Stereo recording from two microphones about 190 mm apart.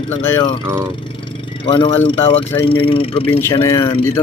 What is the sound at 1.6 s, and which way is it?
Speech, 30° left (ahead or behind).